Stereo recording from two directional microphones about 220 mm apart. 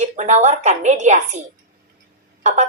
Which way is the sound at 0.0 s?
35° right (ahead or behind).